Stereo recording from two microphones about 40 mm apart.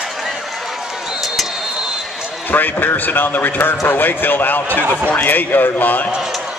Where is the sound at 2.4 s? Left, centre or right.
Left.